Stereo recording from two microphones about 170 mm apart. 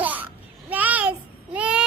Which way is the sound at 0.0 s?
10° right (ahead or behind).